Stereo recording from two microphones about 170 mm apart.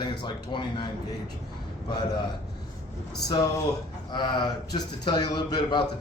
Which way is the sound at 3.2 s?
20° left (ahead or behind).